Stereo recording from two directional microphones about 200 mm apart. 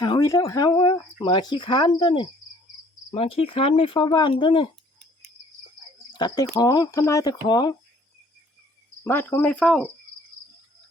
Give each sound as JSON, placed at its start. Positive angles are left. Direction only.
{"t": 0.0, "sound": "speech", "side_deg": 20}
{"t": 6.1, "sound": "speech", "side_deg": 20}
{"t": 9.0, "sound": "speech", "side_deg": 10}